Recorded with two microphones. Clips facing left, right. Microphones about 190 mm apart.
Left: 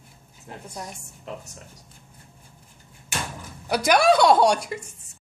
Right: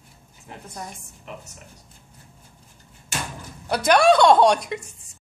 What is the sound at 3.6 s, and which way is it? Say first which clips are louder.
A woman's voice: right 2 dB; 10° left (ahead or behind).